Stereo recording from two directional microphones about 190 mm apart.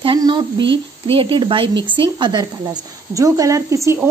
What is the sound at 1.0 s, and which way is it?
Speech, 30° right (ahead or behind).